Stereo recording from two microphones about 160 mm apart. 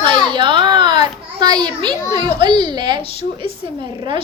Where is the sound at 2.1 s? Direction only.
30° right (ahead or behind).